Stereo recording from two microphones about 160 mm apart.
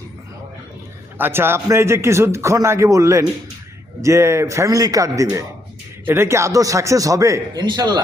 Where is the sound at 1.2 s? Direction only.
15° right (ahead or behind).